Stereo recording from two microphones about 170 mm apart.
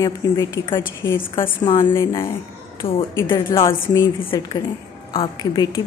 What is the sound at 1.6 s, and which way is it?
Speech, 30° left (ahead or behind).